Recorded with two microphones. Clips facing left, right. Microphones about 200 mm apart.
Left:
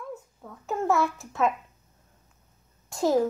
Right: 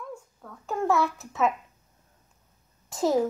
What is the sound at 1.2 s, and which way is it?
Speech, centre (ahead or behind).